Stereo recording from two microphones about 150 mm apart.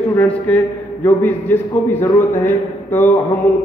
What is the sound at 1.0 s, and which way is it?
A man's voice, 15° left (ahead or behind).